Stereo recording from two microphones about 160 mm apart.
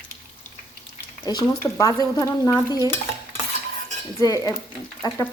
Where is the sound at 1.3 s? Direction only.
25° left (ahead or behind).